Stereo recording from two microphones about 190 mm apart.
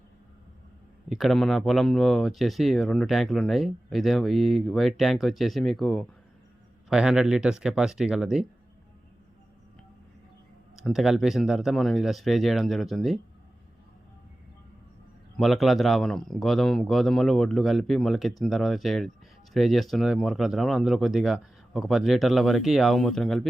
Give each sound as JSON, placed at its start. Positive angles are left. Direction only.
{"t": 1.1, "sound": "speech", "side_deg": 0}
{"t": 10.8, "sound": "speech", "side_deg": 0}
{"t": 15.4, "sound": "speech", "side_deg": 0}